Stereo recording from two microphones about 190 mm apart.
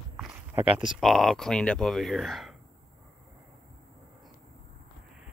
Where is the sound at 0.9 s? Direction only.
Centre (ahead or behind).